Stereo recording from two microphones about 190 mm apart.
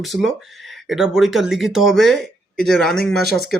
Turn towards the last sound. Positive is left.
turn(degrees=0)  # may be behind; listen again after turning